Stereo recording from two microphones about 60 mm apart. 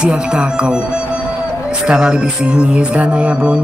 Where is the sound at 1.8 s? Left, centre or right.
Centre.